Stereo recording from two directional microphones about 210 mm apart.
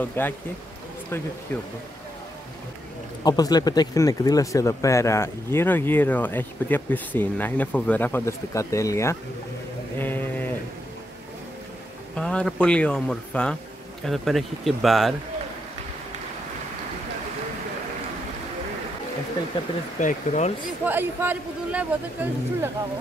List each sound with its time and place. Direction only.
0.0 s speech: 10° left (ahead or behind)
1.5 s speech: 10° left (ahead or behind)
3.3 s speech: 20° left (ahead or behind)
9.9 s a sound: 10° left (ahead or behind)
12.2 s speech: 5° left (ahead or behind)
20.0 s speech: 35° left (ahead or behind)
20.8 s speech: 10° right (ahead or behind)